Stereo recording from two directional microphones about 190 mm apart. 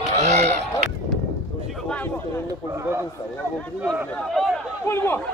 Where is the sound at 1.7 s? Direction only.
10° left (ahead or behind).